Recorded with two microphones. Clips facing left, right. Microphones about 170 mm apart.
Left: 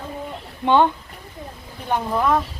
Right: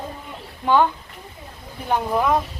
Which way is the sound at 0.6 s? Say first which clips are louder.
Left 1 dB; 20° left (ahead or behind).